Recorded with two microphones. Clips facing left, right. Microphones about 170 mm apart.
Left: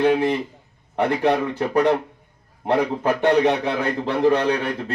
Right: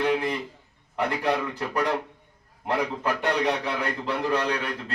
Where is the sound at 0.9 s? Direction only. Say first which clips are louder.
Left 6 dB; 25° left (ahead or behind).